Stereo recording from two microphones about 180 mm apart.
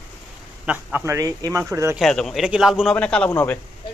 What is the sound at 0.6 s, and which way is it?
Speech, 5° right (ahead or behind).